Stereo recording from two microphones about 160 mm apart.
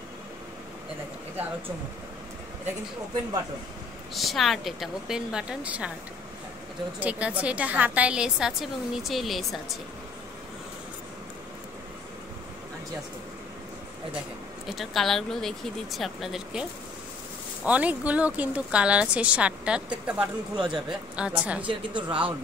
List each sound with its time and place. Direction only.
4.1 s speech: centre (ahead or behind)
7.0 s a woman's voice: 10° right (ahead or behind)
14.7 s speech: centre (ahead or behind)
17.6 s a woman's voice: 10° right (ahead or behind)
21.6 s speech: 30° right (ahead or behind)